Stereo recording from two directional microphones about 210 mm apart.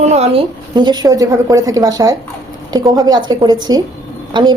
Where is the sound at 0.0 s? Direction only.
30° right (ahead or behind).